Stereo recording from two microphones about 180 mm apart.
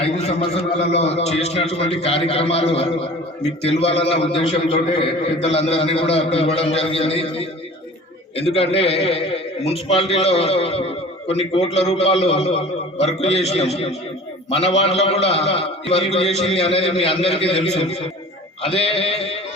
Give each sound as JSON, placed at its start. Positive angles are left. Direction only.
{"t": 0.0, "sound": "a man's voice", "side_deg": 35}